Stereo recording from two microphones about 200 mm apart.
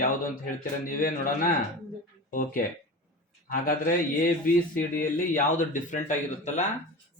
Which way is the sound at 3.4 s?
45° left (ahead or behind).